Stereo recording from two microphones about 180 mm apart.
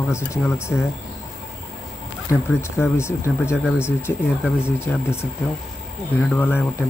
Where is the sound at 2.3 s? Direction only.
15° left (ahead or behind).